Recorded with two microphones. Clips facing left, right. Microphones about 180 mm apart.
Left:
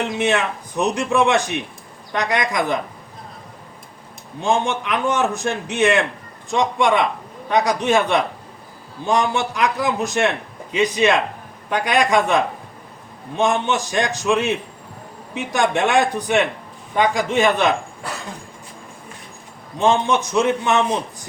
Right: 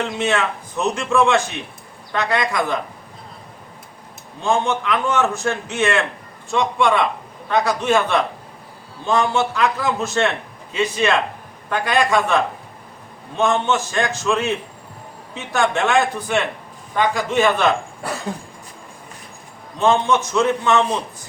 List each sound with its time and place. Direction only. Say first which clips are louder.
0.1 s a man's voice: left 1 dB; 15° left (ahead or behind)
4.4 s a man's voice: right 1 dB; 15° left (ahead or behind)
19.8 s a man's voice: even; 15° left (ahead or behind)